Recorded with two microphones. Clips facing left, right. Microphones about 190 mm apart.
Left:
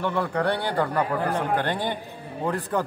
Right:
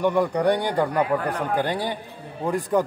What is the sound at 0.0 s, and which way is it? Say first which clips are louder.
A man's voice: right 4 dB; 15° right (ahead or behind).